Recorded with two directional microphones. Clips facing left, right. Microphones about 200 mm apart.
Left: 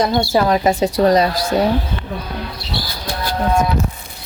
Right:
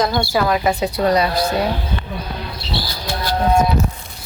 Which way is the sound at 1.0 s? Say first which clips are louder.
Left 1 dB; 40° left (ahead or behind).